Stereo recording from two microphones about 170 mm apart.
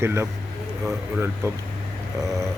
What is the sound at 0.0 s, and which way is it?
Speech, 15° right (ahead or behind).